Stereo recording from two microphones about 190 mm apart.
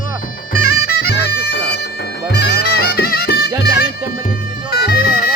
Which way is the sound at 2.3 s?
55° left (ahead or behind).